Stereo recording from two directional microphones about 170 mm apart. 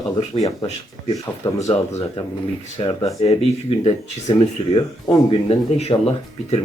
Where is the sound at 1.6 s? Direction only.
40° left (ahead or behind).